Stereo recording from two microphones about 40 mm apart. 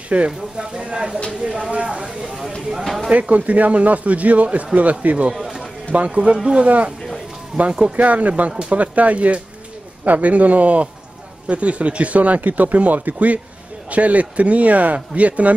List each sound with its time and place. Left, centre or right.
0.1 s speech: right
2.8 s speech: centre
3.1 s speech: right
5.3 s a sound: centre
5.9 s speech: right
6.3 s speech: right
7.8 s speech: right